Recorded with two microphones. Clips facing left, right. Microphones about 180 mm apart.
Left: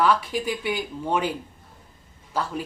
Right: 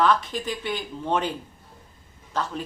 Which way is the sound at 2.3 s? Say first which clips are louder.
Left 1 dB; 10° left (ahead or behind).